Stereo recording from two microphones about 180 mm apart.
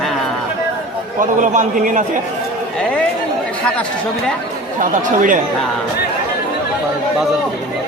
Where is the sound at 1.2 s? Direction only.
45° right (ahead or behind).